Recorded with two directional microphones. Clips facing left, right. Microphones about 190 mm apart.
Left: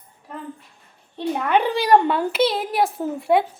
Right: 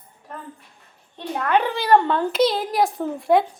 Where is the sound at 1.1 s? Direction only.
15° left (ahead or behind).